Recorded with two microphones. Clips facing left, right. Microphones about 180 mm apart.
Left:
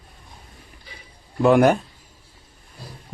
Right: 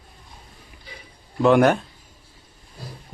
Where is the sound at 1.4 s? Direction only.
5° left (ahead or behind).